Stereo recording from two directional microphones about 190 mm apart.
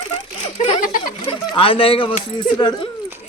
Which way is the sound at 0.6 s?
45° left (ahead or behind).